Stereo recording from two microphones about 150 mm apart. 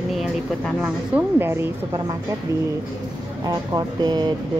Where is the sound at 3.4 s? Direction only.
30° right (ahead or behind).